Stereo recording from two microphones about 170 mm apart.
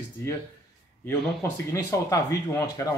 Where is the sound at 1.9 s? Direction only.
20° left (ahead or behind).